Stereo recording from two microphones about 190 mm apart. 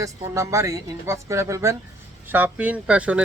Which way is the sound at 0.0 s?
15° right (ahead or behind).